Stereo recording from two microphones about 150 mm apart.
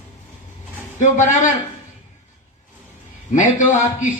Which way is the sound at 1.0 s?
55° left (ahead or behind).